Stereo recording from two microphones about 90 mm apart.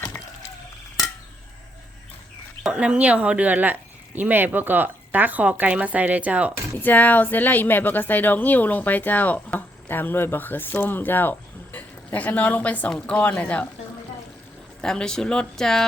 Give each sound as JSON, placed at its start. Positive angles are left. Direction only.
{"t": 2.6, "sound": "speech", "side_deg": -10}
{"t": 6.8, "sound": "speech", "side_deg": 20}
{"t": 14.8, "sound": "speech", "side_deg": 10}